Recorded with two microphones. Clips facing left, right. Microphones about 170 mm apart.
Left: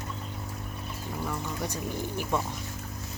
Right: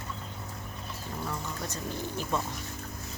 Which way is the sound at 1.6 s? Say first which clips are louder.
Left 3 dB; 15° left (ahead or behind).